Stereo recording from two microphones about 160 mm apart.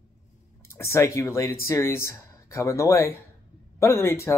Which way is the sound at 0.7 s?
15° left (ahead or behind).